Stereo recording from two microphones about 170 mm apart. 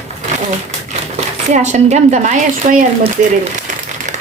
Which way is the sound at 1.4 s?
45° right (ahead or behind).